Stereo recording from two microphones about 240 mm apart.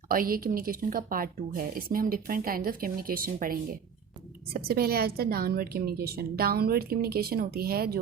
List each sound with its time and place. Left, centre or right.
0.1 s speech: right